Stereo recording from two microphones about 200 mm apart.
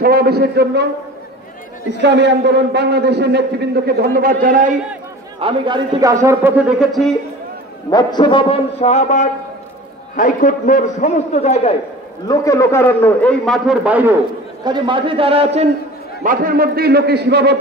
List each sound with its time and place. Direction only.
0.0 s a man's voice: 50° right (ahead or behind)
1.9 s a man's voice: 60° right (ahead or behind); by 4.7 s 40° right (ahead or behind)
5.4 s a man's voice: 25° right (ahead or behind); by 7.2 s centre (ahead or behind)
7.9 s a man's voice: 20° left (ahead or behind)
12.3 s a man's voice: 15° left (ahead or behind); by 14.1 s 5° right (ahead or behind)
14.6 s a man's voice: 25° right (ahead or behind)
16.2 s a man's voice: 45° right (ahead or behind)